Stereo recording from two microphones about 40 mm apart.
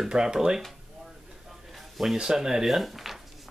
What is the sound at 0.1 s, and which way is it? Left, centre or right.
Speech, centre.